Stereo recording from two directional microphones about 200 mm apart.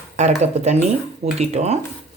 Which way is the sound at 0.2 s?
35° right (ahead or behind).